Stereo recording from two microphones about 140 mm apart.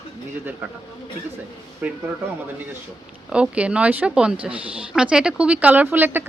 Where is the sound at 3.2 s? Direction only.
10° right (ahead or behind).